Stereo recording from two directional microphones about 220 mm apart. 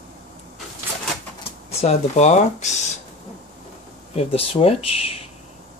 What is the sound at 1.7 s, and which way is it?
Speech, 30° left (ahead or behind).